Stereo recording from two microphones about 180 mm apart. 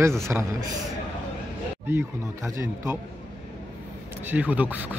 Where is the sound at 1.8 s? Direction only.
15° right (ahead or behind).